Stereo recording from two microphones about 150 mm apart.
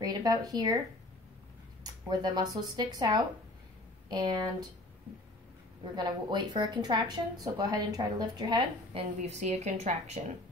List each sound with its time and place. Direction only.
0.0 s speech: 25° right (ahead or behind)
1.8 s speech: 25° right (ahead or behind)
5.9 s speech: 30° right (ahead or behind)
9.2 s a woman's voice: 50° right (ahead or behind)